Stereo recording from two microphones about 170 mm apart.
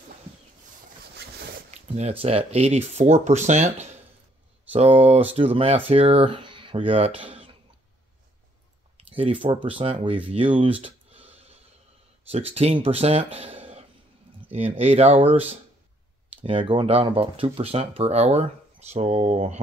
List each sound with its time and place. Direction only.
1.7 s speech: 40° right (ahead or behind)
4.7 s speech: 35° right (ahead or behind)
8.9 s speech: 30° right (ahead or behind)